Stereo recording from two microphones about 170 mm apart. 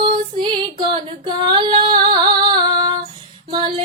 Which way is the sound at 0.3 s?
25° right (ahead or behind).